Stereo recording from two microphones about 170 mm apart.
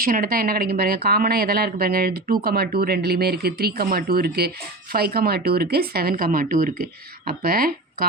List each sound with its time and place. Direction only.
0.0 s speech: 60° right (ahead or behind)